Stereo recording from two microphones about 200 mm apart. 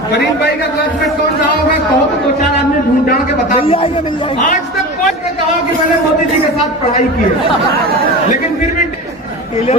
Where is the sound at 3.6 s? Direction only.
30° left (ahead or behind).